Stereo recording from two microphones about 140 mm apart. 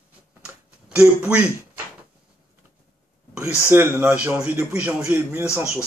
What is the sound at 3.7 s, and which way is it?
Speech, 15° right (ahead or behind).